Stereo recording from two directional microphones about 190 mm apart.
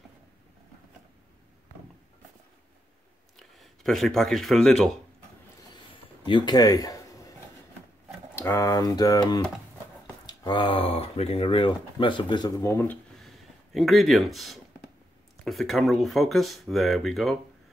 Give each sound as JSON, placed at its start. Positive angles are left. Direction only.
{"t": 3.3, "sound": "speech", "side_deg": 0}
{"t": 6.2, "sound": "a sound", "side_deg": 25}
{"t": 8.4, "sound": "speech", "side_deg": 15}